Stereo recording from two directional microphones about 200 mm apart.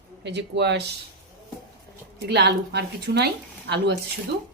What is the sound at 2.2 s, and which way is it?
A woman's voice, 55° right (ahead or behind).